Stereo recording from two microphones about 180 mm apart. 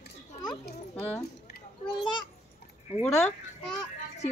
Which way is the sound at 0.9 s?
10° left (ahead or behind).